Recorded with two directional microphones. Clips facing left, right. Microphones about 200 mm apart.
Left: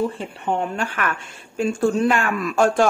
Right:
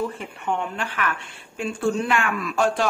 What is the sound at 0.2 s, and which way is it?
Speech, 40° left (ahead or behind).